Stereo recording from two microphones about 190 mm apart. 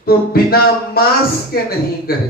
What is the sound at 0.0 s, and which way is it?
A man's voice, 55° left (ahead or behind).